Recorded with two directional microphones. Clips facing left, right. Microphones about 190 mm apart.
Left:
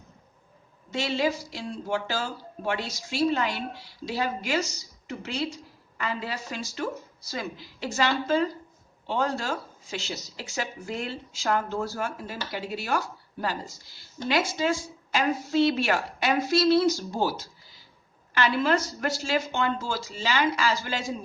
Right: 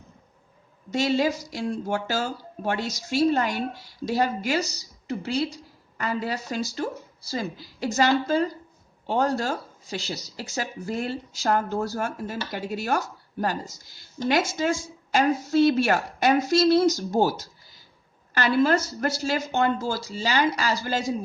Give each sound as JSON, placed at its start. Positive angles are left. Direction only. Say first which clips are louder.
{"t": 0.9, "sound": "speech", "louder": "right 4 dB", "side_deg": -40}